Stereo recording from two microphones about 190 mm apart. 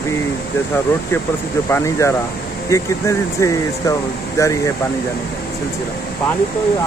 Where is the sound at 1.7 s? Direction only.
15° left (ahead or behind).